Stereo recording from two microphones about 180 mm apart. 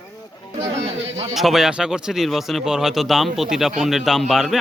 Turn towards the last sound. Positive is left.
turn(degrees=0)  # may be behind; listen again after turning